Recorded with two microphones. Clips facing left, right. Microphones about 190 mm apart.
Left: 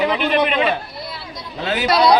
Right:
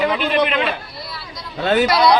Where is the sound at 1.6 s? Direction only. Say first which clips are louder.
Right 6 dB; 50° right (ahead or behind).